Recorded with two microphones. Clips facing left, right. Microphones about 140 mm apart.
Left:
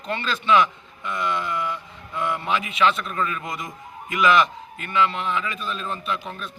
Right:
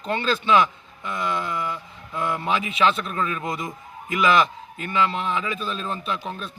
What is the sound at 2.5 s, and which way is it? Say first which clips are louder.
A man's voice: even; 35° right (ahead or behind).